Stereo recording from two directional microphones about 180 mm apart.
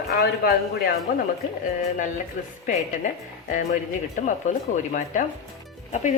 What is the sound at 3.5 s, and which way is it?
A woman's voice, 45° left (ahead or behind).